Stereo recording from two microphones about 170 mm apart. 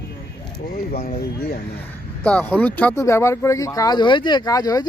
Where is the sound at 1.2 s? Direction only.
65° left (ahead or behind).